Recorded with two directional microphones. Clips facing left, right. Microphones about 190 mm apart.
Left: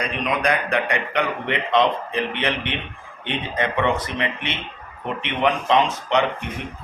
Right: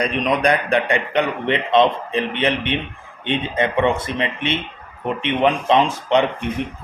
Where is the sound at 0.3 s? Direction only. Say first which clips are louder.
Right 3 dB; 30° right (ahead or behind).